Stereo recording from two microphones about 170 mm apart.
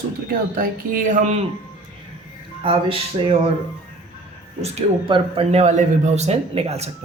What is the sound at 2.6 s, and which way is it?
Speech, 35° right (ahead or behind).